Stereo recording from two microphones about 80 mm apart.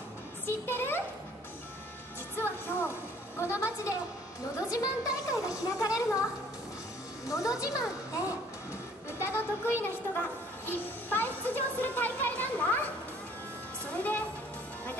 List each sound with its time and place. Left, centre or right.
0.5 s speech: left
2.3 s a woman's voice: left
7.2 s a woman's voice: left
9.2 s a child's voice: left
13.9 s speech: left